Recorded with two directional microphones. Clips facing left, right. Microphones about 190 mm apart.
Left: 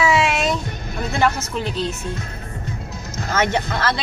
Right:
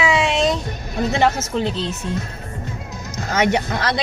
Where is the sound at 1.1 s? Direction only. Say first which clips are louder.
Right 1 dB; 20° right (ahead or behind).